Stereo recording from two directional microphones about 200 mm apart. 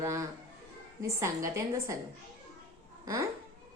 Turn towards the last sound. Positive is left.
turn(degrees=-15)  # may be behind; listen again after turning